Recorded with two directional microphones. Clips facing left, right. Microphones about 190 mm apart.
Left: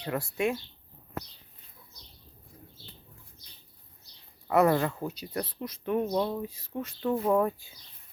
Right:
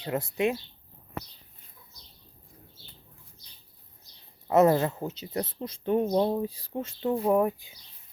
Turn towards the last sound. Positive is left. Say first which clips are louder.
# right 2 dB
turn(degrees=-15)  # may be behind; listen again after turning